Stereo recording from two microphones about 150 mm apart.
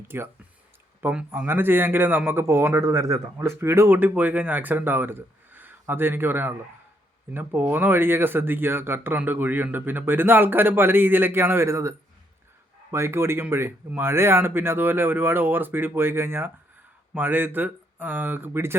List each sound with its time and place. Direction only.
0.1 s a man's voice: 15° right (ahead or behind)